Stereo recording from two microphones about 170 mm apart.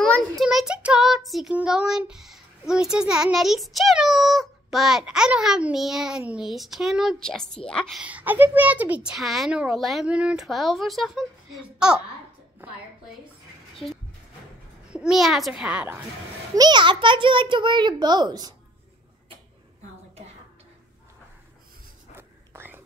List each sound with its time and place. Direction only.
0.0 s child singing: centre (ahead or behind)
8.0 s child singing: 10° right (ahead or behind)
14.9 s child singing: 5° right (ahead or behind)
16.5 s a child's voice: 25° right (ahead or behind)
22.1 s whispering: 15° right (ahead or behind)